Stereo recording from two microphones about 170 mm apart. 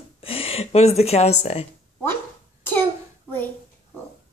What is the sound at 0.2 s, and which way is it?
Speech, 35° left (ahead or behind).